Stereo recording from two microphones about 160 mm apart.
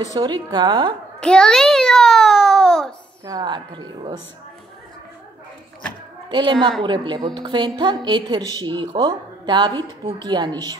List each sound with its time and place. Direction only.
0.0 s a woman's voice: 25° right (ahead or behind)
1.2 s a child's voice: 5° left (ahead or behind)
3.3 s a woman's voice: 25° right (ahead or behind)
6.3 s a woman's voice: 30° right (ahead or behind)